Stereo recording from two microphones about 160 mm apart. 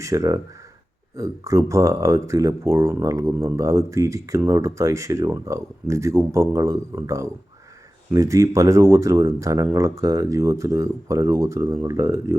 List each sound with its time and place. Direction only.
0.0 s speech: 20° right (ahead or behind)